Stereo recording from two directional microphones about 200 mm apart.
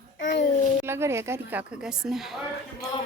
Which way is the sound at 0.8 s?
10° right (ahead or behind).